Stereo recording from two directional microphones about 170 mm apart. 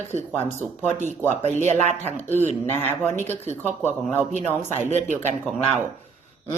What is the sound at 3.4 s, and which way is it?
Speech, 40° right (ahead or behind).